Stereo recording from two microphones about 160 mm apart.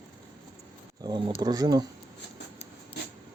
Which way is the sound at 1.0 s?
25° right (ahead or behind).